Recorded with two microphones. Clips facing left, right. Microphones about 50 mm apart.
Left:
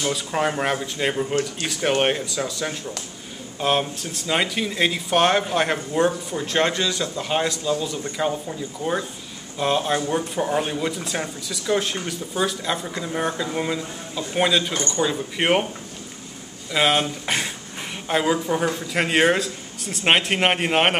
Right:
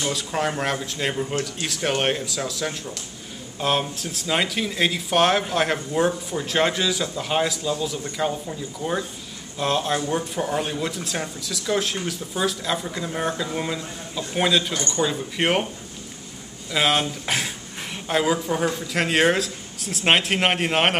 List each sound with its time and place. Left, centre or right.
0.0 s speech: centre
14.7 s speech: left
15.0 s speech: centre
16.7 s speech: centre